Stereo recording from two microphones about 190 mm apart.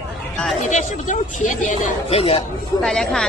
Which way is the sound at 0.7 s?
40° left (ahead or behind).